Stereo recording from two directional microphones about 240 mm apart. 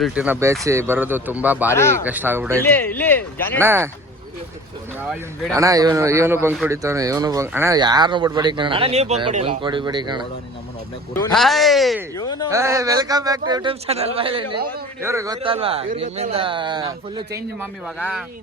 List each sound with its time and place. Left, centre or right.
0.0 s speech: centre
1.6 s speech: centre
2.0 s speech: centre
2.6 s speech: centre
3.6 s speech: centre
5.5 s a man's voice: centre
11.1 s speech: centre
12.1 s speech: centre
12.5 s speech: centre
15.4 s a man's voice: right
17.8 s speech: centre